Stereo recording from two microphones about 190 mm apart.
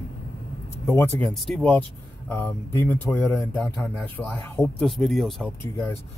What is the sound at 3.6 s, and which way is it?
Speech, centre (ahead or behind).